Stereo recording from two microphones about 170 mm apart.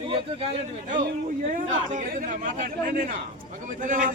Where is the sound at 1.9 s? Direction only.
50° right (ahead or behind).